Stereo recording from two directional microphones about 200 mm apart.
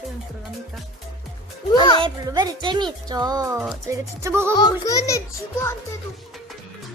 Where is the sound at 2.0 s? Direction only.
20° right (ahead or behind).